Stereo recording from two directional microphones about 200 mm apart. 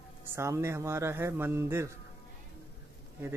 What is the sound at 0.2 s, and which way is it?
Speech, 15° right (ahead or behind).